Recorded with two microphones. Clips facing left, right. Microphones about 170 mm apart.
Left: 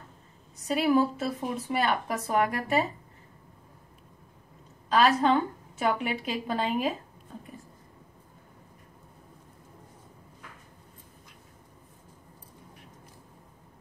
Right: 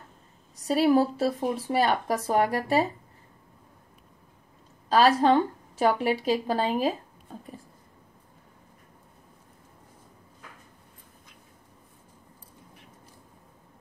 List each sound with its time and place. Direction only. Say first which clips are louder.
0.7 s speech: right 3 dB; 35° right (ahead or behind)
4.8 s speech: right 3 dB; 35° right (ahead or behind)